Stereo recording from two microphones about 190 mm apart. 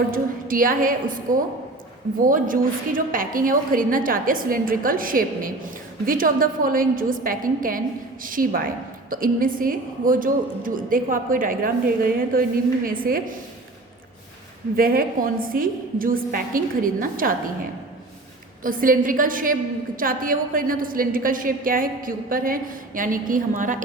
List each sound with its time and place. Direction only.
0.1 s a woman's voice: 45° right (ahead or behind)
14.8 s a woman's voice: 50° right (ahead or behind)
18.6 s a woman's voice: 45° right (ahead or behind)